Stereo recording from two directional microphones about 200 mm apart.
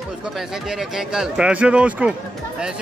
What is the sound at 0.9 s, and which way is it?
Speech, 5° right (ahead or behind).